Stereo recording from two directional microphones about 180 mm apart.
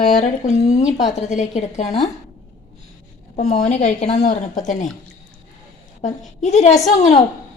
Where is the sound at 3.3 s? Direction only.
40° left (ahead or behind).